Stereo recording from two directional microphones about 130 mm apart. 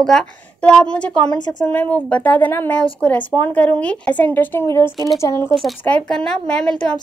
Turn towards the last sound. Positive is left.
turn(degrees=5)  # may be behind; listen again after turning